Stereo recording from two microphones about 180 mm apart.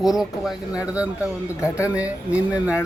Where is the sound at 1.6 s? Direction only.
15° left (ahead or behind).